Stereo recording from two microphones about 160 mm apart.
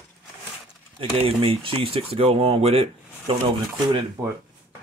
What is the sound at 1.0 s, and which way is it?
Speech, 35° right (ahead or behind).